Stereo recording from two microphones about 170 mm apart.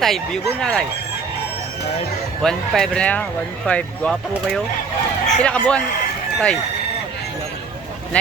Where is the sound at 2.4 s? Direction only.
5° left (ahead or behind).